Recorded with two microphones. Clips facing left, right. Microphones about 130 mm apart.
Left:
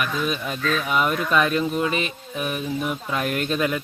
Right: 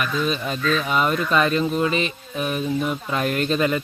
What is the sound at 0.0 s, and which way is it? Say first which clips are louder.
Speech: right 2 dB; 5° left (ahead or behind).